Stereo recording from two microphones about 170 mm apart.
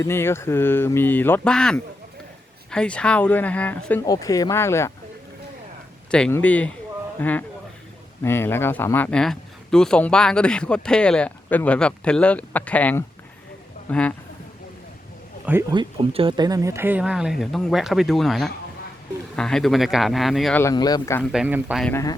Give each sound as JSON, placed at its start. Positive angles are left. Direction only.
{"t": 0.0, "sound": "speech", "side_deg": 15}
{"t": 4.0, "sound": "speech", "side_deg": 20}
{"t": 6.1, "sound": "speech", "side_deg": 5}
{"t": 15.7, "sound": "speech", "side_deg": -30}
{"t": 20.6, "sound": "speech", "side_deg": 20}
{"t": 21.3, "sound": "speech", "side_deg": -5}